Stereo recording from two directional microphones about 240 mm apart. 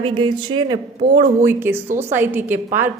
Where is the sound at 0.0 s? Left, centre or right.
Centre.